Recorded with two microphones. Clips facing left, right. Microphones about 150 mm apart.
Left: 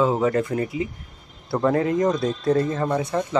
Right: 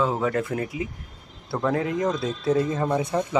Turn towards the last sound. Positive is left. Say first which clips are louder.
# left 1 dB
turn(degrees=-20)  # may be behind; listen again after turning